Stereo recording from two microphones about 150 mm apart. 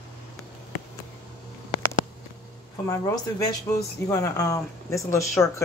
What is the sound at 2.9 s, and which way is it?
Speech, 25° left (ahead or behind).